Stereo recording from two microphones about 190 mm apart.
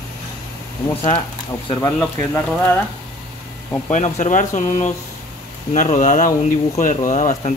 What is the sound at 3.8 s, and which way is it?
Speech, 40° left (ahead or behind).